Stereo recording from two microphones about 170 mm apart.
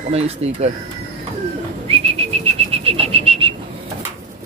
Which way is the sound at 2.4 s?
35° right (ahead or behind).